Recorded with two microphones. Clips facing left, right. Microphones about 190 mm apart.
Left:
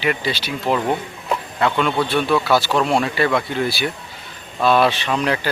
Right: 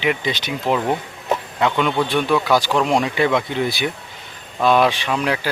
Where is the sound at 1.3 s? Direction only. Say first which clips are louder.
Right 1 dB; 15° right (ahead or behind).